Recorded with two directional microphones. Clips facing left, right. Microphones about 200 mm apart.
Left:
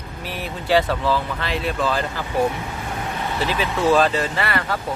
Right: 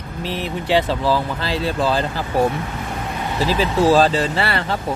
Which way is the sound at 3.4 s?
35° right (ahead or behind).